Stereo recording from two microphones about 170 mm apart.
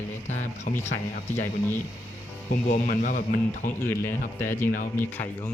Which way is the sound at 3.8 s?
15° left (ahead or behind).